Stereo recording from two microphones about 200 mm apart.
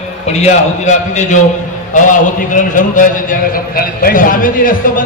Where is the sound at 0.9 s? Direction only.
35° left (ahead or behind).